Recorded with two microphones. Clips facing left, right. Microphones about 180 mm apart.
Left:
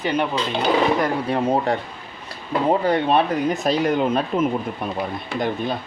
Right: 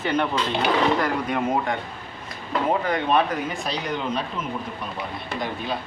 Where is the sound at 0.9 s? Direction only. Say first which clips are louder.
Left 3 dB; 30° left (ahead or behind).